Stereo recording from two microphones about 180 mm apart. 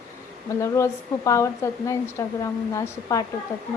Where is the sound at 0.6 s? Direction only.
15° left (ahead or behind).